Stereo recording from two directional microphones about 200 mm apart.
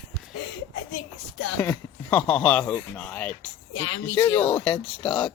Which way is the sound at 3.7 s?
80° left.